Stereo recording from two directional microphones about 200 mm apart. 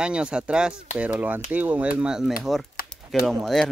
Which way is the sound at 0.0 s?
5° right (ahead or behind).